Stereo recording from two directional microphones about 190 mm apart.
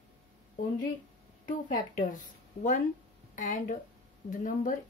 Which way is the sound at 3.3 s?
40° left (ahead or behind).